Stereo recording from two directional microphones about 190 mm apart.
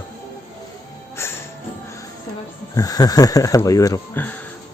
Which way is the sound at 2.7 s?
20° left (ahead or behind).